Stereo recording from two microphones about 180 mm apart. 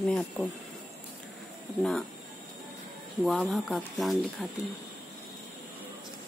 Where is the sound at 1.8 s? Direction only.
Centre (ahead or behind).